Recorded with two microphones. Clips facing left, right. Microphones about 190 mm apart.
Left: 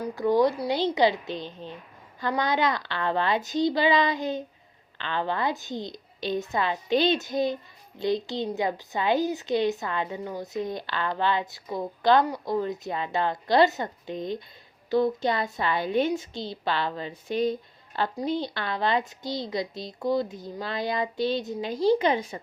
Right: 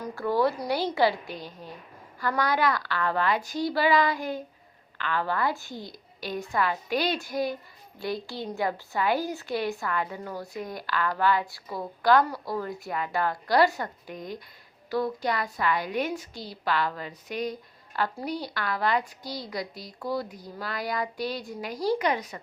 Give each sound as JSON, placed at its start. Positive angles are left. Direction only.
{"t": 0.0, "sound": "a woman's voice", "side_deg": 15}